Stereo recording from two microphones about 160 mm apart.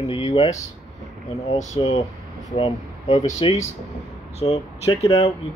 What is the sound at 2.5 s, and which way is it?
Speech, 35° left (ahead or behind).